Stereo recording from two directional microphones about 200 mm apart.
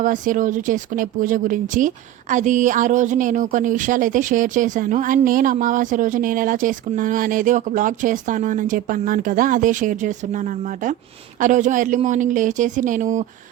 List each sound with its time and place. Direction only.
0.0 s speech: 40° right (ahead or behind)